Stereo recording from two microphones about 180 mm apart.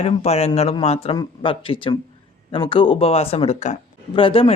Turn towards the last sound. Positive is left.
turn(degrees=30)  # may be behind; listen again after turning